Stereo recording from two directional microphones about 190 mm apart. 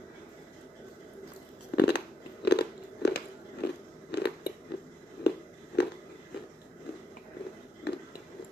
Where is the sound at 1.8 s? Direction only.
60° left (ahead or behind).